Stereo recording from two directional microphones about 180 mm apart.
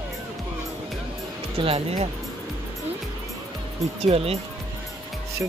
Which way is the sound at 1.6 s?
35° right (ahead or behind).